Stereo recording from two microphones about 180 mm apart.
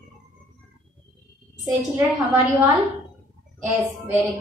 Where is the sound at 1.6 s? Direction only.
20° right (ahead or behind).